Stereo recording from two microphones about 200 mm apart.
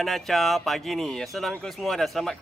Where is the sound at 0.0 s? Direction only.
Centre (ahead or behind).